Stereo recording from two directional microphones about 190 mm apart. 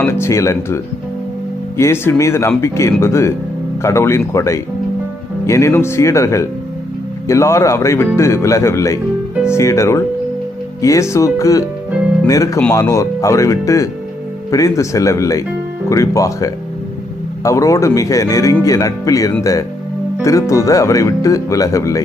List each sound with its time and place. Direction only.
0.0 s speech: 15° left (ahead or behind)